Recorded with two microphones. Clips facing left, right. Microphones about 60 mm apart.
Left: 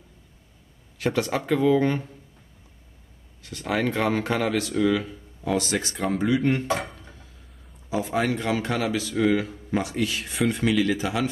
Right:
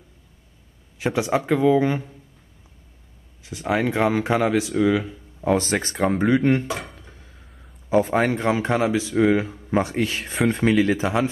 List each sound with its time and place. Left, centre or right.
0.9 s speech: centre
3.4 s speech: centre
5.4 s speech: right
6.7 s speech: centre
7.9 s speech: right